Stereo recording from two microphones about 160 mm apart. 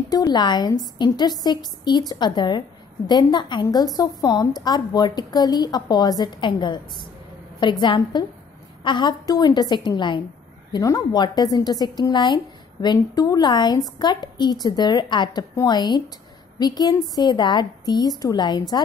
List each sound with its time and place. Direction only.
0.1 s a woman's voice: 25° left (ahead or behind)
7.8 s a woman's voice: 30° left (ahead or behind)